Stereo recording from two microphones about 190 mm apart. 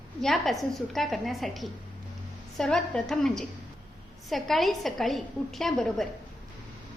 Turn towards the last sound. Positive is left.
turn(degrees=0)  # may be behind; listen again after turning